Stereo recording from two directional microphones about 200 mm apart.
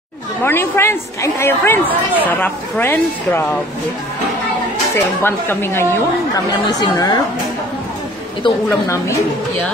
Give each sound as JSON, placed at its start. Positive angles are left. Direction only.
{"t": 0.4, "sound": "speech", "side_deg": 10}
{"t": 4.9, "sound": "a woman's voice", "side_deg": 10}
{"t": 8.6, "sound": "speech", "side_deg": 15}